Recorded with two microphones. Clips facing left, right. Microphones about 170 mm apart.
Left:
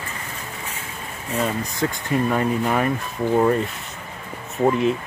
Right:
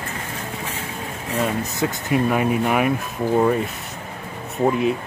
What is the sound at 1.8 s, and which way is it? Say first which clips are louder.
Speech: right 1 dB; 10° right (ahead or behind).